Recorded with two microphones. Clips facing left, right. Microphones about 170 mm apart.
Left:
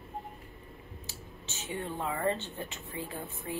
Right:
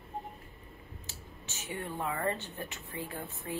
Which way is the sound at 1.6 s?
20° left (ahead or behind).